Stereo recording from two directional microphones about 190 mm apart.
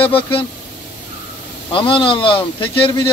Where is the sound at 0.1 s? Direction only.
30° left (ahead or behind).